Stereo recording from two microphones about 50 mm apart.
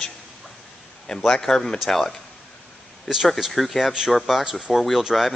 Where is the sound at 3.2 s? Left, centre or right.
Centre.